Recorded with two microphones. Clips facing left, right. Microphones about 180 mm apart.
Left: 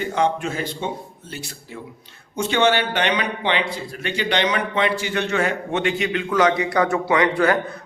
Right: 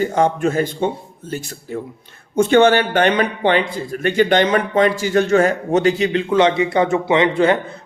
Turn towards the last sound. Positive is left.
turn(degrees=-25)  # may be behind; listen again after turning